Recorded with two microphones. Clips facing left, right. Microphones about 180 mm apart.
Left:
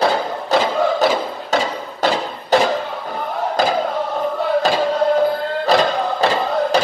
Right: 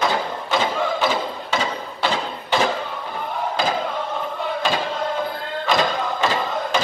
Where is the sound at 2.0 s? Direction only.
40° left (ahead or behind).